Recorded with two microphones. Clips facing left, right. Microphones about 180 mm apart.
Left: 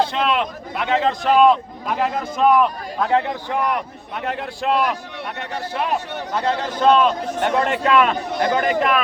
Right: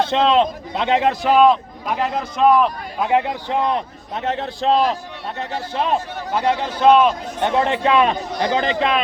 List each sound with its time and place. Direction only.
0.0 s a man's voice: 25° right (ahead or behind)
1.2 s speech: centre (ahead or behind)
3.0 s a man's voice: 15° right (ahead or behind)
6.3 s a man's voice: 15° right (ahead or behind)